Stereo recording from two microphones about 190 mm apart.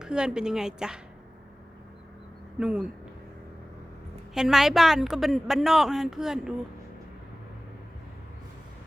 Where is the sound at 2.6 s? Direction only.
5° right (ahead or behind).